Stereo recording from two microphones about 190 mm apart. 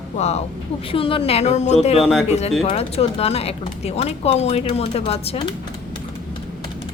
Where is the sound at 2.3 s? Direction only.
35° left (ahead or behind).